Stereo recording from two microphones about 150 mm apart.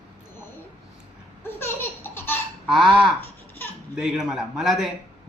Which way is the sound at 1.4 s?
15° left (ahead or behind).